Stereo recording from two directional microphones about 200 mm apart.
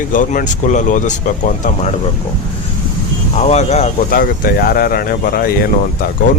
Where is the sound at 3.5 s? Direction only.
35° left (ahead or behind); by 5.5 s 50° left (ahead or behind).